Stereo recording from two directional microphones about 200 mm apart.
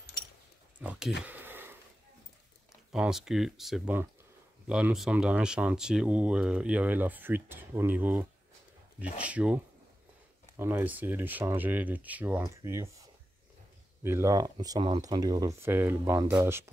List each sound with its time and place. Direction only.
0.7 s a sound: 5° right (ahead or behind)
2.9 s speech: 5° right (ahead or behind)
10.6 s speech: 10° right (ahead or behind)